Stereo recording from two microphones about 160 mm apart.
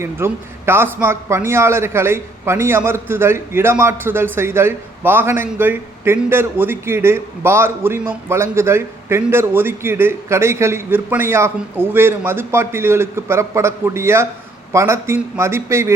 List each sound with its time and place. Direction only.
0.0 s a man's voice: 15° right (ahead or behind)